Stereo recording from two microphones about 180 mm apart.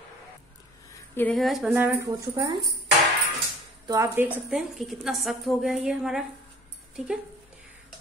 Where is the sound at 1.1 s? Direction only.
5° left (ahead or behind).